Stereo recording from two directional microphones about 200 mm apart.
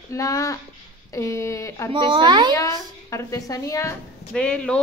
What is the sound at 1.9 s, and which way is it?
Speech, 25° right (ahead or behind).